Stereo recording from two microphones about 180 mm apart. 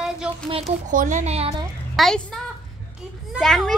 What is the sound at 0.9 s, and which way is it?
Speech, 45° right (ahead or behind).